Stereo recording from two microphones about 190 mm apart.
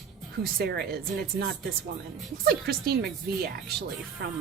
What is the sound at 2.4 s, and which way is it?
A woman's voice, 55° right (ahead or behind).